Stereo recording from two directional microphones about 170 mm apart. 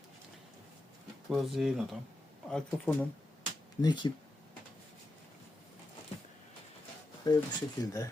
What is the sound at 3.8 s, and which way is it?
Speech, 25° left (ahead or behind).